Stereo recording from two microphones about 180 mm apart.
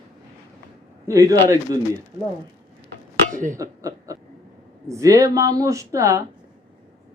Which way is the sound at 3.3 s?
45° right (ahead or behind).